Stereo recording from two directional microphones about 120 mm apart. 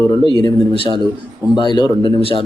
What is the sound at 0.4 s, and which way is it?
Speech, 45° left (ahead or behind).